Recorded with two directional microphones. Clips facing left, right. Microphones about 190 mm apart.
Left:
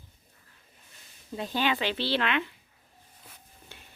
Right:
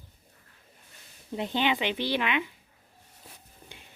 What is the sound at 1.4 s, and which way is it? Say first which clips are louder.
Speech: right 1 dB; 20° right (ahead or behind).